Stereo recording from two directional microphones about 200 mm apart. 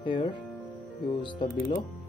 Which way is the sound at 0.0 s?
25° left (ahead or behind).